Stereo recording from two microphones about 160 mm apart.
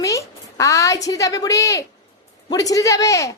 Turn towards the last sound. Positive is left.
turn(degrees=20)  # may be behind; listen again after turning